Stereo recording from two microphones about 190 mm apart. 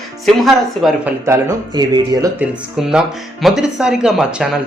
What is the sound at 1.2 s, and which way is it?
Speech, 15° right (ahead or behind).